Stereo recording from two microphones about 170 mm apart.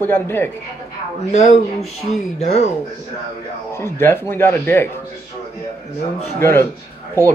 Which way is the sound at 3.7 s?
15° left (ahead or behind).